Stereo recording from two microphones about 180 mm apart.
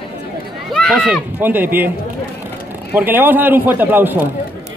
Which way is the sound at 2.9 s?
10° right (ahead or behind).